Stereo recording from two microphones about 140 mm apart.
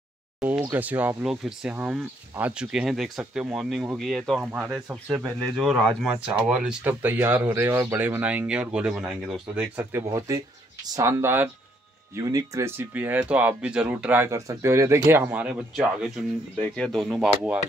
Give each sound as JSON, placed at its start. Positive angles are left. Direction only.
{"t": 0.4, "sound": "speech", "side_deg": -15}
{"t": 4.5, "sound": "speech", "side_deg": -10}
{"t": 6.0, "sound": "speech", "side_deg": -5}
{"t": 9.8, "sound": "speech", "side_deg": -20}
{"t": 16.5, "sound": "speech", "side_deg": 10}